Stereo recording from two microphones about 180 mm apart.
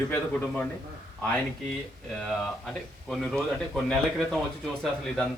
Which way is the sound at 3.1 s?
Centre (ahead or behind).